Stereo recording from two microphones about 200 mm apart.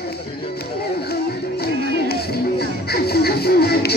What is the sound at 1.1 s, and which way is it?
Music, 50° left (ahead or behind).